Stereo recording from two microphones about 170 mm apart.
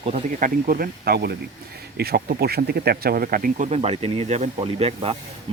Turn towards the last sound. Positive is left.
turn(degrees=-35)  # may be behind; listen again after turning